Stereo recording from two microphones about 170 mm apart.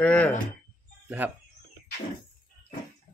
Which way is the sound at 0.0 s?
10° left (ahead or behind).